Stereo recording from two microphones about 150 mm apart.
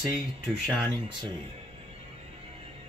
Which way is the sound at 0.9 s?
30° right (ahead or behind).